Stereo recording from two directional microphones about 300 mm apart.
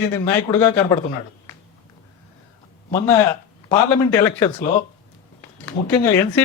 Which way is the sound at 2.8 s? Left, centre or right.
Centre.